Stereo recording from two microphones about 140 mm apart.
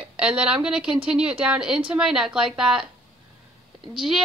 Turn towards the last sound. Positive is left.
turn(degrees=-5)  # may be behind; listen again after turning